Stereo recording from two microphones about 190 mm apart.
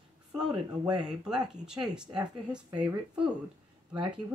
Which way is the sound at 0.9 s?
5° right (ahead or behind).